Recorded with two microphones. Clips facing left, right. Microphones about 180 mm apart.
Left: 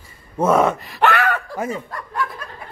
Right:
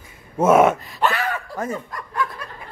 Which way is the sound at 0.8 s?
70° left (ahead or behind).